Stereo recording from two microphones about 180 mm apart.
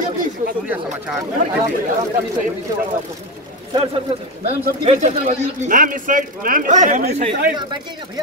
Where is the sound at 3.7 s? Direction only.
30° right (ahead or behind).